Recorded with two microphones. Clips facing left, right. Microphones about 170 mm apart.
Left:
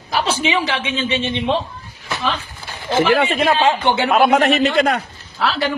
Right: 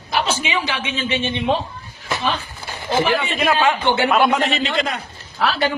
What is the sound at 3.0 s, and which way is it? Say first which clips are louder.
Speech: left 5 dB; 75° left (ahead or behind).